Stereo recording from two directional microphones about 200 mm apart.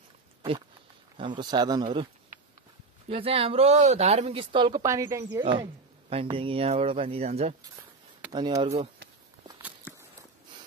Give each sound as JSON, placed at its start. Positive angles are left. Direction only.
{"t": 1.1, "sound": "speech", "side_deg": -25}
{"t": 3.1, "sound": "speech", "side_deg": -30}
{"t": 8.3, "sound": "speech", "side_deg": -20}